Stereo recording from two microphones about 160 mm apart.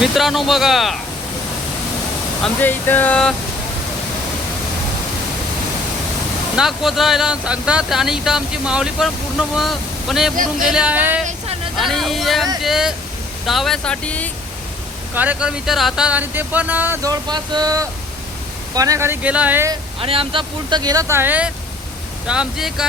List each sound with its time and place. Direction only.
0.0 s speech: centre (ahead or behind)
2.4 s speech: 10° left (ahead or behind)
6.6 s speech: centre (ahead or behind)
15.1 s speech: 10° right (ahead or behind)
20.0 s speech: 35° right (ahead or behind); by 22.9 s 5° right (ahead or behind)